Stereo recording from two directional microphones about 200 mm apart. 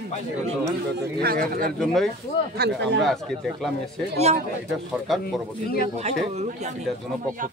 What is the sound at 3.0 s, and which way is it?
Speech, centre (ahead or behind).